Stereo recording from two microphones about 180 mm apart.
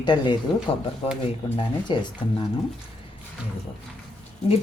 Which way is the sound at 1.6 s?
25° left (ahead or behind).